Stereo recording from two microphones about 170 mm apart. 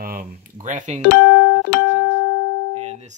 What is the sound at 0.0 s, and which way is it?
Speech, 50° right (ahead or behind).